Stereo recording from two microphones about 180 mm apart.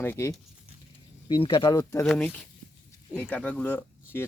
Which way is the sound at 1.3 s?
25° left (ahead or behind).